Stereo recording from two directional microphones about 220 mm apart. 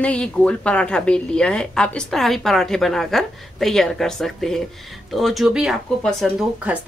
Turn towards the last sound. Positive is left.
turn(degrees=-5)  # may be behind; listen again after turning